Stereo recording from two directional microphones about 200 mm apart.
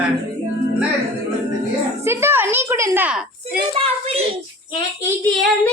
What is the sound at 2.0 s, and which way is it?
A woman's voice, 10° right (ahead or behind).